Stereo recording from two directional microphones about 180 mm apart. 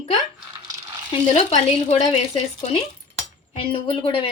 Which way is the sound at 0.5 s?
20° right (ahead or behind).